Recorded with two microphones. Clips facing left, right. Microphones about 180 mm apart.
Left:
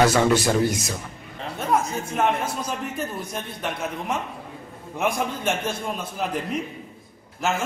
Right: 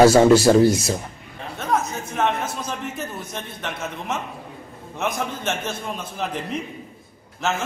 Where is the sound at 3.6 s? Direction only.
10° left (ahead or behind).